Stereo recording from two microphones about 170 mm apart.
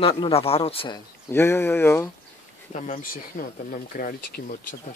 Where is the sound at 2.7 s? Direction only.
45° left (ahead or behind).